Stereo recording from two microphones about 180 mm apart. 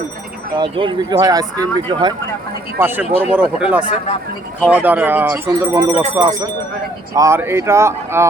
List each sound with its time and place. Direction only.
0.5 s speech: 25° right (ahead or behind)
2.7 s speech: 10° right (ahead or behind)